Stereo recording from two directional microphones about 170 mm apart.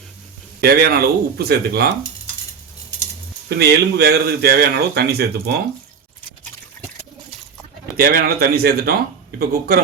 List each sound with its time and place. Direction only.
0.6 s speech: 65° right (ahead or behind)
3.6 s speech: 70° right (ahead or behind)
7.9 s speech: 65° right (ahead or behind)